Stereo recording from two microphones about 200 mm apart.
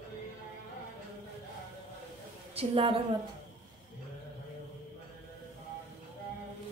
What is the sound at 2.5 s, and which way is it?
Speech, 25° right (ahead or behind).